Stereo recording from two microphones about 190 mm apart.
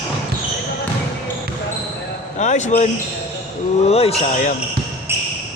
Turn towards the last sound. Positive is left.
turn(degrees=35)  # may be behind; listen again after turning